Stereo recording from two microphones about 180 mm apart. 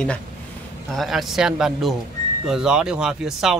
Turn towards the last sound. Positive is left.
turn(degrees=-5)  # may be behind; listen again after turning